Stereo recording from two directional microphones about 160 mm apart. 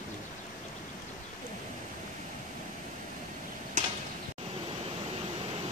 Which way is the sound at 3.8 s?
50° right (ahead or behind).